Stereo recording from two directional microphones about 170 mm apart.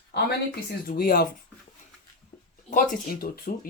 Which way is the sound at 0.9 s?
60° left (ahead or behind).